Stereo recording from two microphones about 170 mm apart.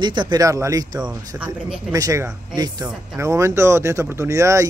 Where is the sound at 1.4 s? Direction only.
5° right (ahead or behind).